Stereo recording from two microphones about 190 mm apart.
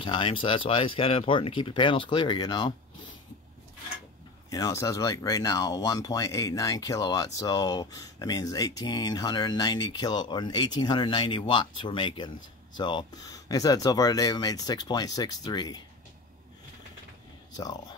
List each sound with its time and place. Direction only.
0.0 s speech: 25° left (ahead or behind)
4.5 s speech: 20° left (ahead or behind)